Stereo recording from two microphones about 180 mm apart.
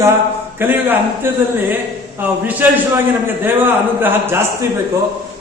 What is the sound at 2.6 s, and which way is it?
Speech, 10° right (ahead or behind).